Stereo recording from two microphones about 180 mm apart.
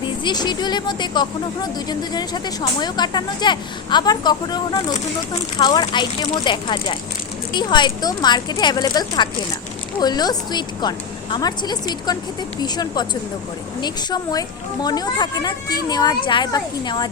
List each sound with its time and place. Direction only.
0.3 s speech: 25° left (ahead or behind)